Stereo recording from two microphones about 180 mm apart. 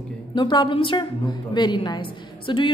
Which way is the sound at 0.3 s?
25° left (ahead or behind).